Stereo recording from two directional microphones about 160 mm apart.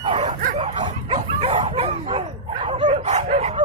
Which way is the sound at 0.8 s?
40° right (ahead or behind).